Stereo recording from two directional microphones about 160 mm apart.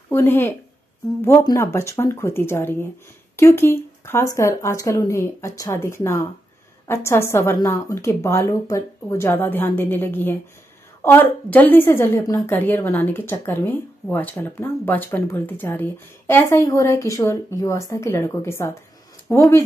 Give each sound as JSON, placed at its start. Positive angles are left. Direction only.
{"t": 0.1, "sound": "a woman's voice", "side_deg": 15}